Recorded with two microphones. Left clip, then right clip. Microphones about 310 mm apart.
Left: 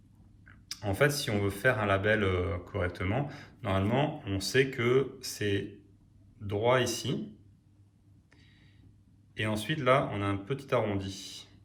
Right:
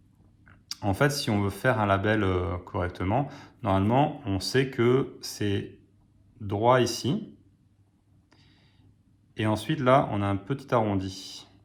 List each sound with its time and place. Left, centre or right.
0.4 s speech: centre
9.3 s speech: centre